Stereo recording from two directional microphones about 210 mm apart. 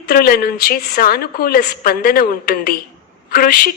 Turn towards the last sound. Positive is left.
turn(degrees=45)  # may be behind; listen again after turning